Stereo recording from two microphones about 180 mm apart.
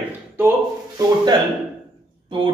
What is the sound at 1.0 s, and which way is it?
Speech, 25° right (ahead or behind).